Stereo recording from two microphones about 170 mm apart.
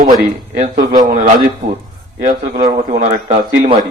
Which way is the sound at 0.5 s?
45° right (ahead or behind).